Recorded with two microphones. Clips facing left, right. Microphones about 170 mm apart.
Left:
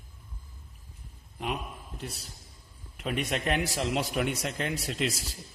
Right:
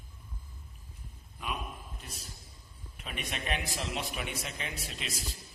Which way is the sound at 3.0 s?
85° left.